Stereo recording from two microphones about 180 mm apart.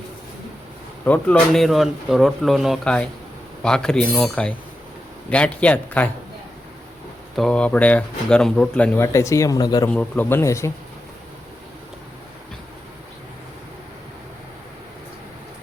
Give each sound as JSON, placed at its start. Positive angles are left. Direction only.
{"t": 1.0, "sound": "speech", "side_deg": 10}
{"t": 7.3, "sound": "speech", "side_deg": 5}
{"t": 9.0, "sound": "speech", "side_deg": 15}
{"t": 9.9, "sound": "speech", "side_deg": 10}